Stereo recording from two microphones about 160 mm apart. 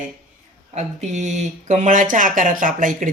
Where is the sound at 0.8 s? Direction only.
45° right (ahead or behind).